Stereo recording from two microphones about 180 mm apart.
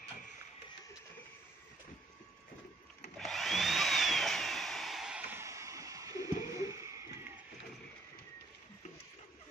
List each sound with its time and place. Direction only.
3.2 s tools: centre (ahead or behind); by 6.9 s 15° right (ahead or behind)